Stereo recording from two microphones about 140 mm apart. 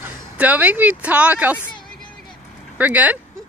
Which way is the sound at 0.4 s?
10° right (ahead or behind).